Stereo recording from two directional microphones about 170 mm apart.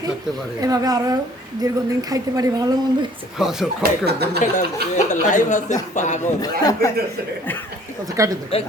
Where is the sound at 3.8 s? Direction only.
70° right (ahead or behind).